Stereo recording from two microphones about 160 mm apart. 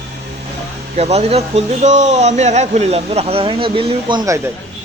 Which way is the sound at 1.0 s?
40° right (ahead or behind).